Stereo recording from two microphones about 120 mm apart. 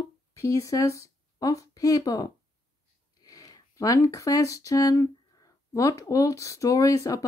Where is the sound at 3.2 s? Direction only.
30° left (ahead or behind).